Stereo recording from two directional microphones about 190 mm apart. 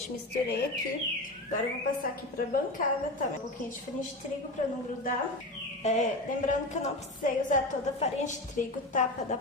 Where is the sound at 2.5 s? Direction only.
45° left (ahead or behind).